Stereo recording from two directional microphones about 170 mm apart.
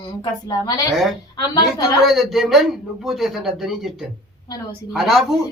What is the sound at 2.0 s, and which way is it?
A man's voice, centre (ahead or behind).